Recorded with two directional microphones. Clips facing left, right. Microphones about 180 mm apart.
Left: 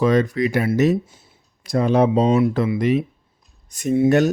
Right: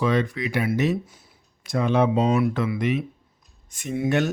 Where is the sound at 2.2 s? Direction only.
25° left (ahead or behind).